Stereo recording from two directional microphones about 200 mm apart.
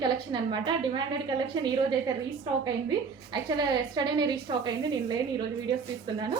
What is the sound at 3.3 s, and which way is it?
A woman's voice, 20° right (ahead or behind).